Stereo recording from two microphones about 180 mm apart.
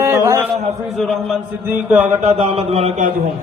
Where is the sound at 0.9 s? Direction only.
Centre (ahead or behind).